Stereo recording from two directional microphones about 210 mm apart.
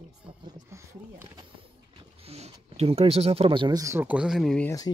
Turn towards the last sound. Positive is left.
turn(degrees=0)  # may be behind; listen again after turning